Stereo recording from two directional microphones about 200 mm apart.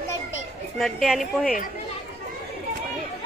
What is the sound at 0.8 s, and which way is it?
Speech, centre (ahead or behind).